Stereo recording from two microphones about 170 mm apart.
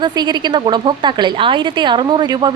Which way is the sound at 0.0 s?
25° right (ahead or behind).